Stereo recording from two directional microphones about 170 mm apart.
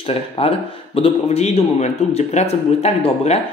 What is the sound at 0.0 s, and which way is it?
A man's voice, 35° left (ahead or behind).